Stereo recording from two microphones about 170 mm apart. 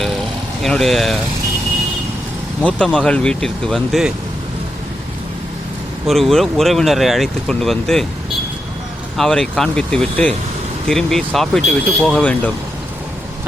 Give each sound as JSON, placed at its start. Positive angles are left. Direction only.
{"t": 0.6, "sound": "speech", "side_deg": 0}
{"t": 2.6, "sound": "speech", "side_deg": 5}
{"t": 6.1, "sound": "speech", "side_deg": 0}
{"t": 9.1, "sound": "speech", "side_deg": 5}